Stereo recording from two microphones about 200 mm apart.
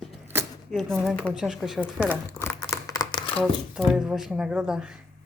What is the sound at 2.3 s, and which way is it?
Crumpling, 15° left (ahead or behind).